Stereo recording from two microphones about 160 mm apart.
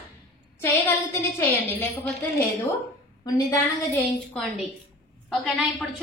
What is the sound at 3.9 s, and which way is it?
A woman's voice, 10° left (ahead or behind).